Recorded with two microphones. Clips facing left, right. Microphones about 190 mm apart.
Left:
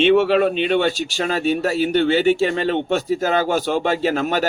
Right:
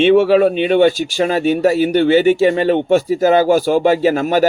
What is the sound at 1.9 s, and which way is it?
Speech, 10° right (ahead or behind).